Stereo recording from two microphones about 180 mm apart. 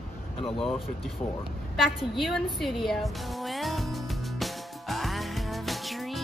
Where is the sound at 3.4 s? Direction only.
Centre (ahead or behind).